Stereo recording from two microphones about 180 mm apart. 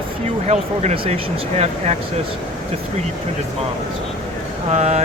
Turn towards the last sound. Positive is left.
turn(degrees=-40)  # may be behind; listen again after turning